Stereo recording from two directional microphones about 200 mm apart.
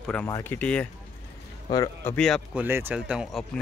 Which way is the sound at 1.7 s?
20° left (ahead or behind).